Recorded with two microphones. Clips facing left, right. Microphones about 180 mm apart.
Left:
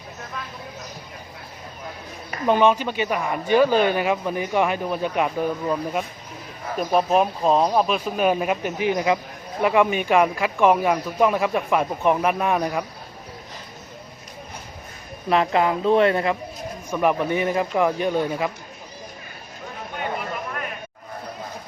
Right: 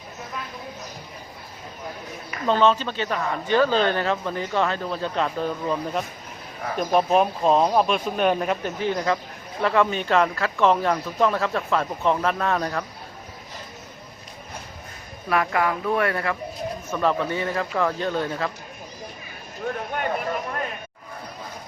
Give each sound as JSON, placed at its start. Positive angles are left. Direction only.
{"t": 2.5, "sound": "speech", "side_deg": 15}
{"t": 15.3, "sound": "speech", "side_deg": 25}